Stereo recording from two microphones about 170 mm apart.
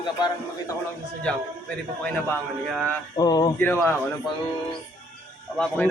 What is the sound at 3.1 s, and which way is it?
Speech, 25° left (ahead or behind).